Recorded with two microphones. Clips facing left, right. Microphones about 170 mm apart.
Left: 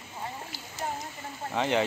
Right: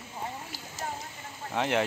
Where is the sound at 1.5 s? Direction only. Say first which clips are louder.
Left 1 dB; centre (ahead or behind).